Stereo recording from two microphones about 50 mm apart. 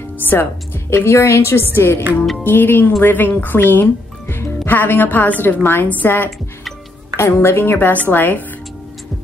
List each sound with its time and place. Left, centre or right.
0.2 s a woman's voice: left
7.2 s a woman's voice: left